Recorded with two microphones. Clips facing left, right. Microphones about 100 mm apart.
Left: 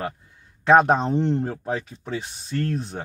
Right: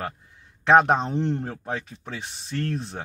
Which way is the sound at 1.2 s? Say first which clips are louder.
Left 3 dB; 20° left (ahead or behind).